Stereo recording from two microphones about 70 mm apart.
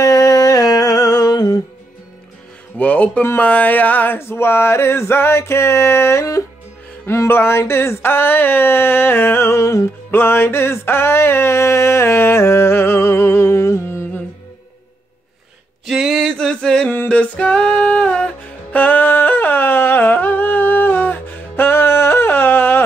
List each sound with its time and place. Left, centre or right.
0.0 s humming: left
2.8 s speech: centre
3.3 s male singing: left
10.1 s a sound: left
15.9 s male singing: centre
16.2 s male singing: centre
17.1 s music: centre